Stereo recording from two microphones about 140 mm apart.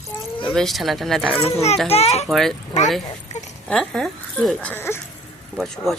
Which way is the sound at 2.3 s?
Centre (ahead or behind).